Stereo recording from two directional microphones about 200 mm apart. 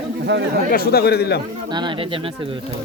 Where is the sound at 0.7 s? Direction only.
50° left (ahead or behind).